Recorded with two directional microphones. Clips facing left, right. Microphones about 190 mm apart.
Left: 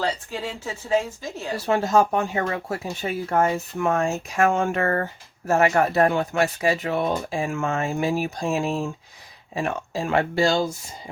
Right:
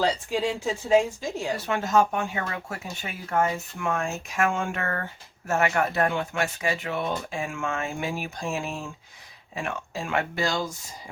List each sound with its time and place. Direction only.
0.0 s speech: 15° right (ahead or behind)
1.5 s speech: 35° left (ahead or behind)